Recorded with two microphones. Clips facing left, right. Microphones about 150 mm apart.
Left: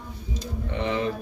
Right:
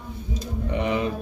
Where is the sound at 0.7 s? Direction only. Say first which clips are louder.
Right 2 dB; 15° right (ahead or behind).